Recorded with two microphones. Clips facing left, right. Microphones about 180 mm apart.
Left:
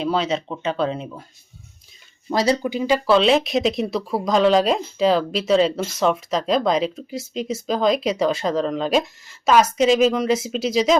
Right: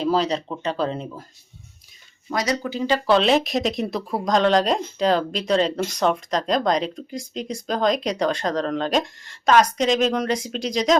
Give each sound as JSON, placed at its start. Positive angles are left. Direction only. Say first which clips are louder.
{"t": 0.0, "sound": "speech", "louder": "right 1 dB", "side_deg": 0}
{"t": 2.3, "sound": "speech", "louder": "left 5 dB", "side_deg": 30}
{"t": 2.6, "sound": "speech", "louder": "left 2 dB", "side_deg": 10}